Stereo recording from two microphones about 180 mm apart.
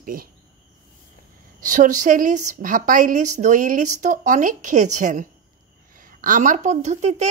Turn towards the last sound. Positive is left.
turn(degrees=-40)  # may be behind; listen again after turning